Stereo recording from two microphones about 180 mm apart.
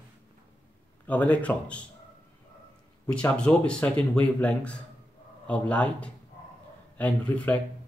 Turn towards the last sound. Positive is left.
turn(degrees=10)  # may be behind; listen again after turning